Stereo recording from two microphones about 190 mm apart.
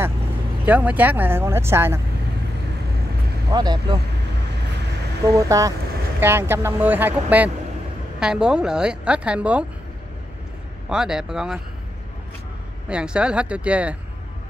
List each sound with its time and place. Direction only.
0.7 s speech: 10° right (ahead or behind)
3.5 s speech: 20° right (ahead or behind)
5.2 s a woman's voice: 20° right (ahead or behind)
10.9 s a woman's voice: 5° right (ahead or behind)
12.8 s a woman's voice: 5° right (ahead or behind)